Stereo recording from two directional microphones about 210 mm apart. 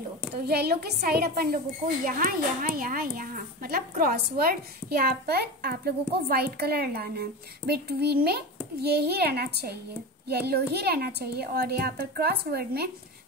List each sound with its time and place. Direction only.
0.3 s a woman's voice: 50° right (ahead or behind)